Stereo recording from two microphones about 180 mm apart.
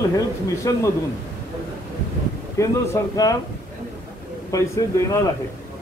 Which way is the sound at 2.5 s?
15° left (ahead or behind).